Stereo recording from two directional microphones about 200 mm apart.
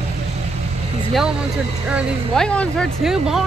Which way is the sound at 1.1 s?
Centre (ahead or behind).